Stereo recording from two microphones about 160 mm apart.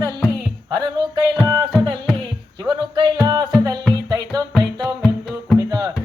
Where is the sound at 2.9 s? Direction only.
30° right (ahead or behind).